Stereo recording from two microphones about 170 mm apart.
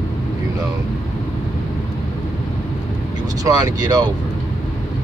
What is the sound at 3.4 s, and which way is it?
Speech, 20° right (ahead or behind).